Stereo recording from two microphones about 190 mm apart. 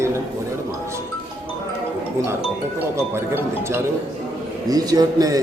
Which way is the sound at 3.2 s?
15° right (ahead or behind).